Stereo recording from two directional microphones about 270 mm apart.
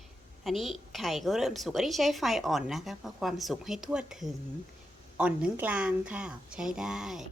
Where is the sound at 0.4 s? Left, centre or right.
Centre.